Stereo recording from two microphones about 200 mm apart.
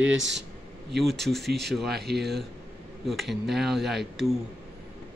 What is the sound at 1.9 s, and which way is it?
Speech, 55° right (ahead or behind).